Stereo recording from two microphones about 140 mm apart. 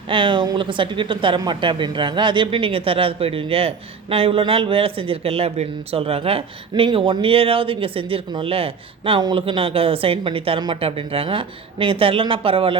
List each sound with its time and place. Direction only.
0.1 s a man's voice: 35° right (ahead or behind)